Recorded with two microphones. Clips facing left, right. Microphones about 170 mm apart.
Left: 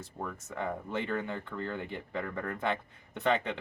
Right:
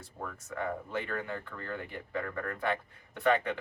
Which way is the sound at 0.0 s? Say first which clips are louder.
Left 3 dB; 20° left (ahead or behind).